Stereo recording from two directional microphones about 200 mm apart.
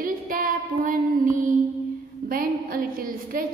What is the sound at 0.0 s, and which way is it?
Female singing, 45° right (ahead or behind).